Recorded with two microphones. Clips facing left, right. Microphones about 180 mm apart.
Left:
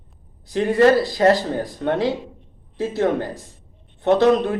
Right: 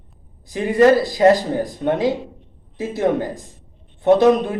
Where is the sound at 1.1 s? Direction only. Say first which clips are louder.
Right 3 dB; 15° right (ahead or behind).